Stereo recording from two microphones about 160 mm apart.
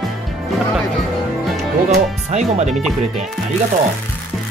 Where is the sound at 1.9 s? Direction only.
45° right (ahead or behind).